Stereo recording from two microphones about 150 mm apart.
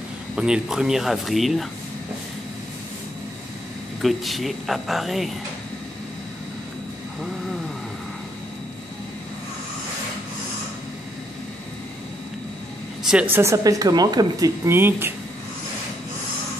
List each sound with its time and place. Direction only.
0.4 s speech: 5° right (ahead or behind)
4.0 s speech: centre (ahead or behind)
13.0 s a woman's voice: 5° right (ahead or behind)